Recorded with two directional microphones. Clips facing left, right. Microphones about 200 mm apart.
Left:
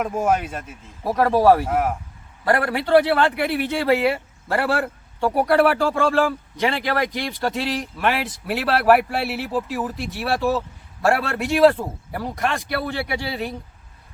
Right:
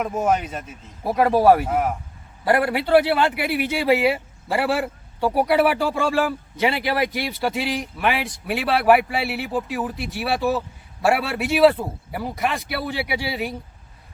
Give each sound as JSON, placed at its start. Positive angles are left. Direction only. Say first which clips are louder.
{"t": 0.2, "sound": "speech", "louder": "even", "side_deg": 5}
{"t": 1.0, "sound": "speech", "louder": "even", "side_deg": -15}
{"t": 1.6, "sound": "a man's voice", "louder": "left 1 dB", "side_deg": 0}
{"t": 2.4, "sound": "a man's voice", "louder": "right 1 dB", "side_deg": -10}